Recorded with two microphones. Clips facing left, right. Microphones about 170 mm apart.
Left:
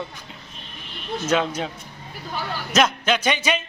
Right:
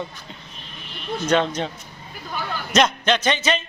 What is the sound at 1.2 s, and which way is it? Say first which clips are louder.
Speech: right 2 dB; 5° left (ahead or behind).